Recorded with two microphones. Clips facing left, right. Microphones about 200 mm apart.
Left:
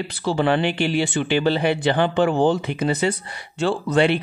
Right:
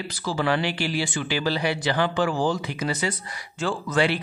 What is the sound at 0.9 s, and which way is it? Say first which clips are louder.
Speech: left 6 dB; 65° left (ahead or behind).